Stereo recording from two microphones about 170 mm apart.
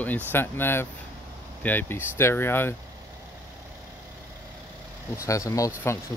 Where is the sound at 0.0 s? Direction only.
10° left (ahead or behind).